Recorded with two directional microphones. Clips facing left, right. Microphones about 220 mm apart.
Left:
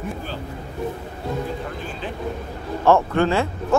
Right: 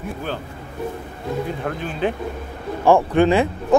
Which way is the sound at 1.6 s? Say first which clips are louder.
Right 7 dB; 60° right (ahead or behind).